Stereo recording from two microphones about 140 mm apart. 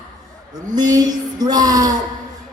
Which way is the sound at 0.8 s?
30° right (ahead or behind).